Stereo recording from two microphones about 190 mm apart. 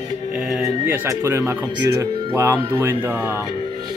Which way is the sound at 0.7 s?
15° right (ahead or behind).